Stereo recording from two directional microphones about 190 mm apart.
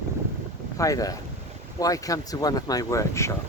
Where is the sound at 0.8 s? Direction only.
20° left (ahead or behind).